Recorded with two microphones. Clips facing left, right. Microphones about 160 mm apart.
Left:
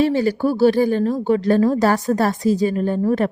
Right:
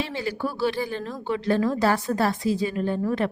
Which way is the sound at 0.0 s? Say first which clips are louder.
Left 11 dB; 45° left (ahead or behind).